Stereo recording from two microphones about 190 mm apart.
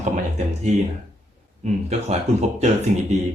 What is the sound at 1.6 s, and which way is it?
Speech, 40° right (ahead or behind).